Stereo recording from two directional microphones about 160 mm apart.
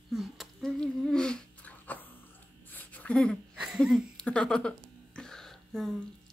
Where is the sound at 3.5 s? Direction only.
Centre (ahead or behind).